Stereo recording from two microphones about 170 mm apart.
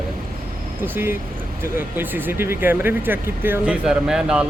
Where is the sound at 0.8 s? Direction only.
15° right (ahead or behind).